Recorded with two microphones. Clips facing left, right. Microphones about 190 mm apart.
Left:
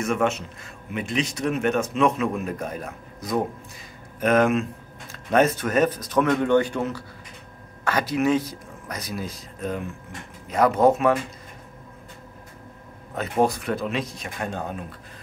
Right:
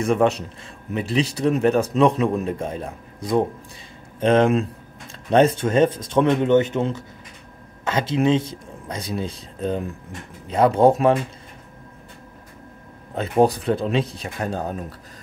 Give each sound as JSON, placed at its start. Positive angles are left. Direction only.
{"t": 0.0, "sound": "speech", "side_deg": -35}
{"t": 13.1, "sound": "speech", "side_deg": -30}